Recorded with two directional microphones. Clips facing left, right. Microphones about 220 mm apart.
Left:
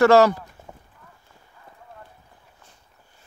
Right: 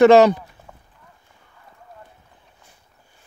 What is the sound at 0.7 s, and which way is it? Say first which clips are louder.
Clip-clop: left 2 dB; 15° left (ahead or behind).